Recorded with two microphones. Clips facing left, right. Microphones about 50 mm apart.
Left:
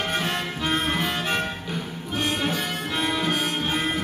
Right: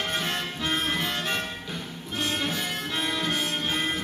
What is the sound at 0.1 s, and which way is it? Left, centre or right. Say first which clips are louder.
Music: left 3 dB; centre.